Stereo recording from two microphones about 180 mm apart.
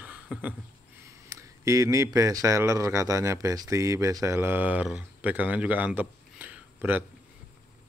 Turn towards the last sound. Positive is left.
turn(degrees=-10)  # may be behind; listen again after turning